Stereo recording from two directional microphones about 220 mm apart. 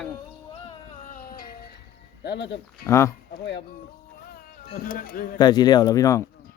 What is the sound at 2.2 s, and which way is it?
Speech, 50° left (ahead or behind).